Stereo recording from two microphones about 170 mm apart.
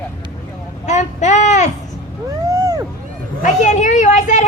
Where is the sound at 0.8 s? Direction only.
45° left (ahead or behind).